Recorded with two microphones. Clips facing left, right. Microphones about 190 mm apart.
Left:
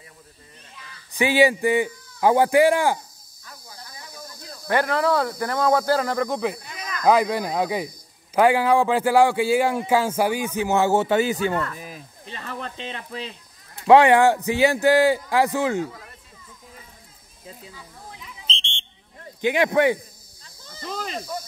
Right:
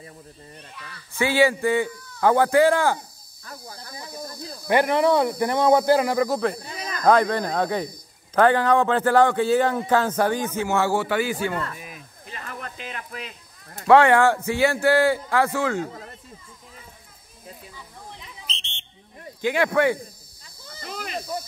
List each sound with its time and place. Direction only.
0.8 s a sound: 65° right (ahead or behind)
1.1 s a man's voice: 15° left (ahead or behind)
3.4 s insect: 55° right (ahead or behind)
3.9 s snake: 35° right (ahead or behind)
4.6 s speech: 15° right (ahead or behind); by 6.6 s centre (ahead or behind)
6.6 s a sound: 30° right (ahead or behind)
7.1 s a man's voice: 5° left (ahead or behind); by 11.5 s 20° left (ahead or behind)
11.7 s a sound: 35° left (ahead or behind)
13.8 s a man's voice: 15° left (ahead or behind)
18.5 s whistle: 30° left (ahead or behind)
19.4 s a man's voice: 20° left (ahead or behind)
20.8 s speech: 30° left (ahead or behind)